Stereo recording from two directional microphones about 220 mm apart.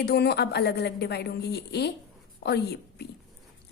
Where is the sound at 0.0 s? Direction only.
45° left (ahead or behind).